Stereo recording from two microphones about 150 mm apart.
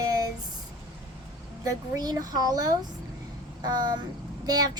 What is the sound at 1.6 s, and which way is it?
A child's voice, 25° right (ahead or behind).